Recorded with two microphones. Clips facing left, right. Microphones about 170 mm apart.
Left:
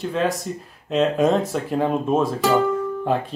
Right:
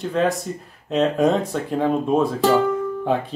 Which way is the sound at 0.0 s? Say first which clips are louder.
Right 2 dB; centre (ahead or behind).